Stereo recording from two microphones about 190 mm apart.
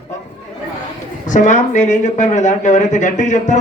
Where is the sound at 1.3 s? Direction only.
40° left (ahead or behind).